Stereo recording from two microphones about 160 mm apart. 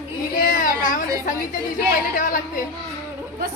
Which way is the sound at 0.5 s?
60° left (ahead or behind).